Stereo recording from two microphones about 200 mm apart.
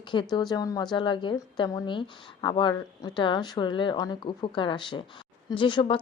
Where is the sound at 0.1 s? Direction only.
20° left (ahead or behind).